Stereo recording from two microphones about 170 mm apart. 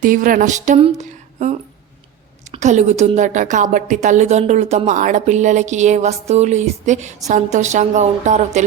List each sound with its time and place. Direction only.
0.0 s a woman's voice: 50° right (ahead or behind)